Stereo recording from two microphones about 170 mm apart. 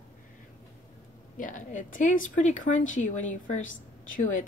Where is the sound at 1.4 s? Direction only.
50° left (ahead or behind).